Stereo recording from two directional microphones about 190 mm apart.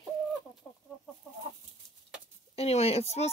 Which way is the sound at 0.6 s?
10° left (ahead or behind).